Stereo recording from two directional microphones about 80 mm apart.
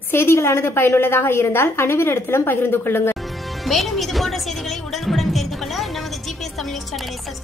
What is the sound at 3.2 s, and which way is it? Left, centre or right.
Speech, centre.